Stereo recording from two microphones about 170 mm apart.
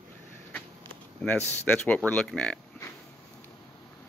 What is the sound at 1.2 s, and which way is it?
Speech, 10° left (ahead or behind).